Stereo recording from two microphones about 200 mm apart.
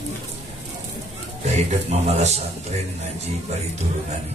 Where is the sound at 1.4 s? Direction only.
35° right (ahead or behind).